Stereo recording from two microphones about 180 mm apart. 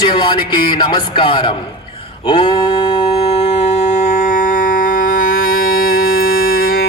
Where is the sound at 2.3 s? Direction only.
25° left (ahead or behind).